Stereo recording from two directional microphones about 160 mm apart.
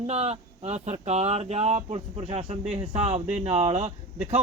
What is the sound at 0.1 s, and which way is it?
Speech, 40° right (ahead or behind).